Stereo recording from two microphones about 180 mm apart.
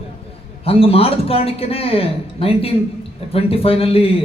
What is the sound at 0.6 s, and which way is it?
A man's voice, 30° left (ahead or behind).